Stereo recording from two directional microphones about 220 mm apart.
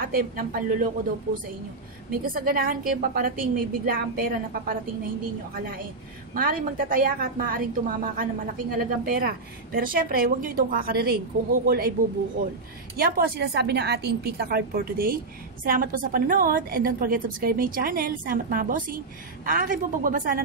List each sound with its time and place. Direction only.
0.0 s a woman's voice: 40° right (ahead or behind)
2.0 s a woman's voice: 40° right (ahead or behind)
6.3 s a woman's voice: 40° right (ahead or behind)
12.9 s a woman's voice: 45° right (ahead or behind)